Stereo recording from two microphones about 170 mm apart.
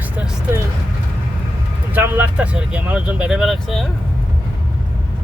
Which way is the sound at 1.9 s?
10° right (ahead or behind).